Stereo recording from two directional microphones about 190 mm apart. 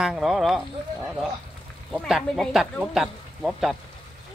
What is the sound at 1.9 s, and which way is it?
Speech, 5° left (ahead or behind).